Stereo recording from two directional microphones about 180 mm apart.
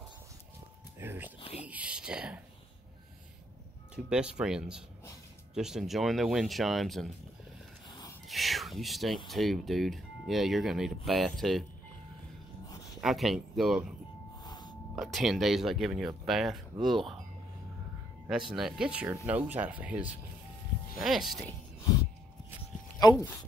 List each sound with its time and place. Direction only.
0.9 s a sound: 10° right (ahead or behind)
3.9 s speech: 5° right (ahead or behind)
8.3 s a sound: centre (ahead or behind)
9.3 s speech: centre (ahead or behind)
12.6 s a sound: 20° left (ahead or behind)
13.0 s speech: centre (ahead or behind)
14.4 s snort: 25° left (ahead or behind)
15.0 s speech: centre (ahead or behind)
18.2 s speech: 5° right (ahead or behind)
22.9 s speech: 20° left (ahead or behind)